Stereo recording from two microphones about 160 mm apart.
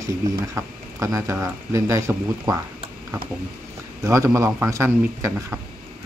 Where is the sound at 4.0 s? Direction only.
20° right (ahead or behind).